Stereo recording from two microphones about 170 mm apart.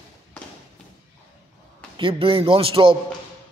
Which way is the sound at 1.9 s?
30° right (ahead or behind).